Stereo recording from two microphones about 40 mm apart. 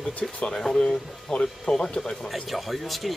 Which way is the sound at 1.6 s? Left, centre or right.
Centre.